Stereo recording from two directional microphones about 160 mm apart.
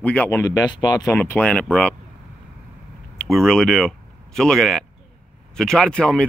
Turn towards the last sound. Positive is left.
turn(degrees=5)  # may be behind; listen again after turning